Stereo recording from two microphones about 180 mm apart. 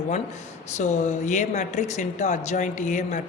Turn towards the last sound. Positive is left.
turn(degrees=45)  # may be behind; listen again after turning